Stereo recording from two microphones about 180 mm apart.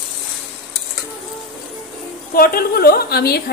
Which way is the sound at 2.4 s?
55° left (ahead or behind).